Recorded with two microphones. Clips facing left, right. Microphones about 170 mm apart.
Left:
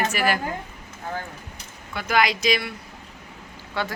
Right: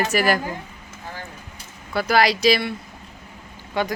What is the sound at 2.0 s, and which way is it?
Speech, 35° right (ahead or behind).